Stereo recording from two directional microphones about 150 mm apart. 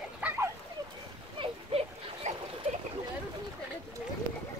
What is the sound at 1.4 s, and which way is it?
Splash, 40° right (ahead or behind).